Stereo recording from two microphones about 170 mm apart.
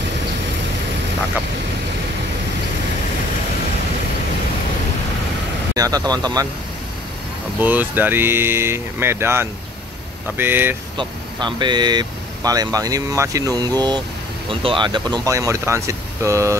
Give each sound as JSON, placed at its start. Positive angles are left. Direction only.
{"t": 5.8, "sound": "speech", "side_deg": -20}
{"t": 7.6, "sound": "speech", "side_deg": -10}
{"t": 11.0, "sound": "speech", "side_deg": -25}